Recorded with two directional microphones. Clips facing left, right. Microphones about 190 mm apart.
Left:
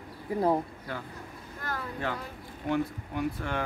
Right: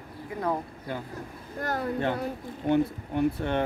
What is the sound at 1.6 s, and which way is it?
Speech, 40° right (ahead or behind).